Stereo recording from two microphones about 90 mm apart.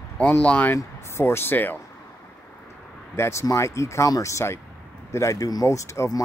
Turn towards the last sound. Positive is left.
turn(degrees=35)  # may be behind; listen again after turning